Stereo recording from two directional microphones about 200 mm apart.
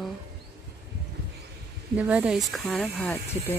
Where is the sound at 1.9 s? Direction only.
5° right (ahead or behind).